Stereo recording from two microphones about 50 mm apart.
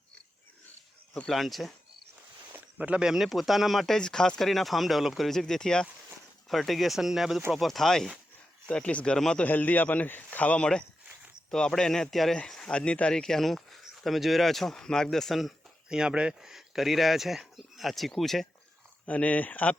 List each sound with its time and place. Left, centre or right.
1.3 s speech: centre
2.7 s speech: right
3.1 s speech: centre
4.4 s speech: centre
6.5 s speech: centre
8.6 s speech: left
9.1 s speech: centre
9.4 s a man's voice: left
11.5 s speech: centre
13.2 s speech: centre
15.9 s speech: centre
16.4 s speech: centre
19.0 s speech: left